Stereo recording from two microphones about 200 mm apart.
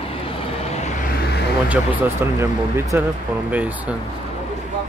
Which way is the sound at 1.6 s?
10° right (ahead or behind).